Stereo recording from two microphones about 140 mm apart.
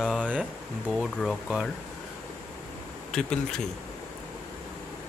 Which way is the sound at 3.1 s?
5° left (ahead or behind).